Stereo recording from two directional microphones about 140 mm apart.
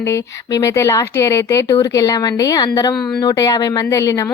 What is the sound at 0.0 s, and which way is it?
A woman's voice, 20° left (ahead or behind).